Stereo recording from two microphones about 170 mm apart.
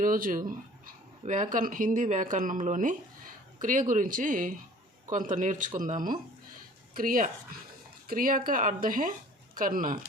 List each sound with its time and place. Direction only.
0.0 s speech: 55° right (ahead or behind)